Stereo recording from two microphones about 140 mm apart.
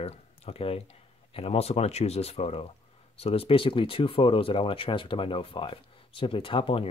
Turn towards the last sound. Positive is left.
turn(degrees=40)  # may be behind; listen again after turning